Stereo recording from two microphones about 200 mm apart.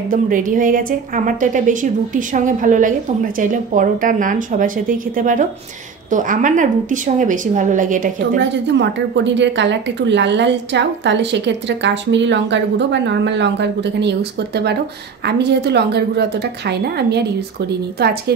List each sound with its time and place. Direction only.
0.1 s speech: 40° right (ahead or behind)
8.4 s a woman's voice: 60° right (ahead or behind)